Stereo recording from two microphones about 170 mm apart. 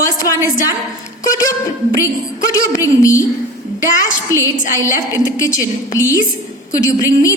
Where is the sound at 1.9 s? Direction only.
20° left (ahead or behind).